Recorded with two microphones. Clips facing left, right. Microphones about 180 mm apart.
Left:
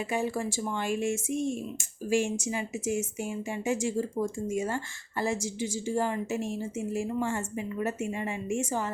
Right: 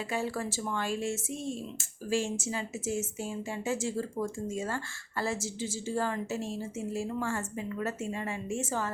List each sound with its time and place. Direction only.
0.1 s speech: 15° left (ahead or behind)